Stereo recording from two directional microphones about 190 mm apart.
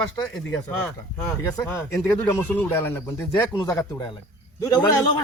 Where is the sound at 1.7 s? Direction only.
15° left (ahead or behind).